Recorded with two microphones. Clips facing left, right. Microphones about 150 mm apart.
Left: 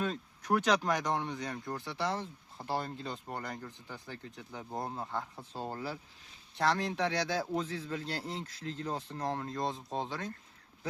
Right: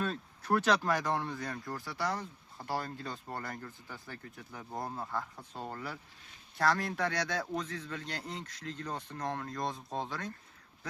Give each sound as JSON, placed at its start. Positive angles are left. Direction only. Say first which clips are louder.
{"t": 0.0, "sound": "speech", "louder": "left 1 dB", "side_deg": 10}